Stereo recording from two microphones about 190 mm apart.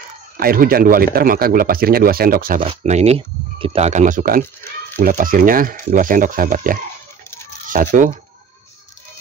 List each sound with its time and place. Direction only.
0.4 s a man's voice: 50° right (ahead or behind)
2.6 s a man's voice: 35° right (ahead or behind)